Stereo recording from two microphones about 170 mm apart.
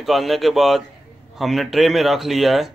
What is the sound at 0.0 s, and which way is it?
Speech, centre (ahead or behind).